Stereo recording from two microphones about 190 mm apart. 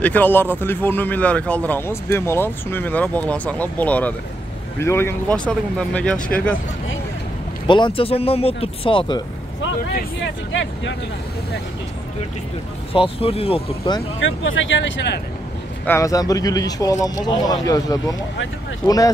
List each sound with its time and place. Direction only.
0.0 s speech: 10° left (ahead or behind)
7.6 s speech: 25° left (ahead or behind)
10.5 s speech: 75° left (ahead or behind)
12.9 s speech: 30° left (ahead or behind)
14.2 s speech: 85° left
15.8 s speech: 15° left (ahead or behind)